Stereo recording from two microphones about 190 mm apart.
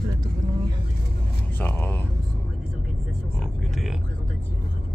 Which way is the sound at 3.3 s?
Centre (ahead or behind).